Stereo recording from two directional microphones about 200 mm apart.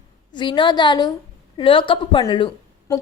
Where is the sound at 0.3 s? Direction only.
25° left (ahead or behind).